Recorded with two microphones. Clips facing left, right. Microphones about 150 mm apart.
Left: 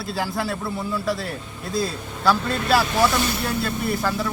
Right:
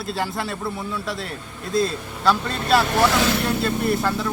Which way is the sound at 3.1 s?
90° right.